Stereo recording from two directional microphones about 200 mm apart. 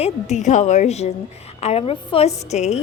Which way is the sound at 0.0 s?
35° left (ahead or behind).